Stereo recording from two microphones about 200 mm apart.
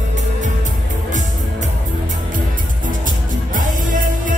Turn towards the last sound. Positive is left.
turn(degrees=-40)  # may be behind; listen again after turning